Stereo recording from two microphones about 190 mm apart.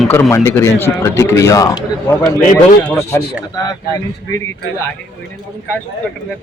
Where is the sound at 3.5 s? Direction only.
20° left (ahead or behind).